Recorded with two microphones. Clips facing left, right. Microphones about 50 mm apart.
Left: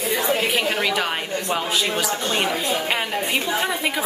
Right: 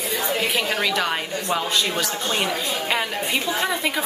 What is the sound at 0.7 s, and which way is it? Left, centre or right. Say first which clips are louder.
A woman's voice: even; centre.